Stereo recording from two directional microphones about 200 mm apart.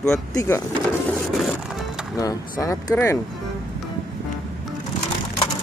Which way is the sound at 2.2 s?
15° left (ahead or behind).